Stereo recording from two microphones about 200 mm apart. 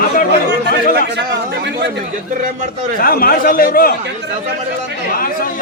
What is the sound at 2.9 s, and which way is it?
Speech, 45° left (ahead or behind).